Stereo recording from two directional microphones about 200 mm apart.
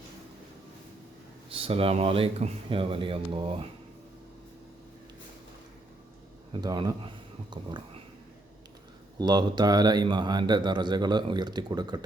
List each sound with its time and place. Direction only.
1.5 s speech: 30° right (ahead or behind)
6.5 s speech: 20° right (ahead or behind)
9.1 s speech: 20° right (ahead or behind)